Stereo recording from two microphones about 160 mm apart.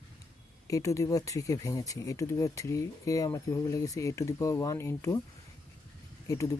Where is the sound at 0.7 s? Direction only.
20° left (ahead or behind).